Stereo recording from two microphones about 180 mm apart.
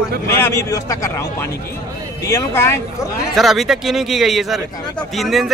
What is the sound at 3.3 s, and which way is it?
A man's voice, centre (ahead or behind).